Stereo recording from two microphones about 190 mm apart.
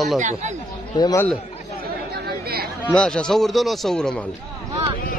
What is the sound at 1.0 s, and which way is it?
Speech, 20° left (ahead or behind).